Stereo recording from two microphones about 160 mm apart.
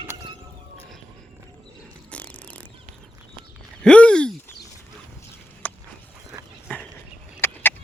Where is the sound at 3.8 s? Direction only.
5° left (ahead or behind).